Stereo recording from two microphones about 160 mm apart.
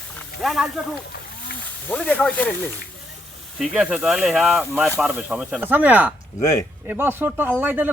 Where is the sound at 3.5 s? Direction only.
5° right (ahead or behind).